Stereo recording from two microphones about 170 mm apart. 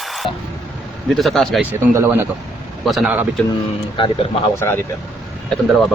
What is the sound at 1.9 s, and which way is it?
Speech, 15° right (ahead or behind).